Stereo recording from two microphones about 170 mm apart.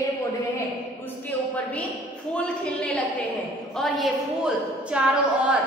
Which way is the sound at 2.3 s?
5° left (ahead or behind).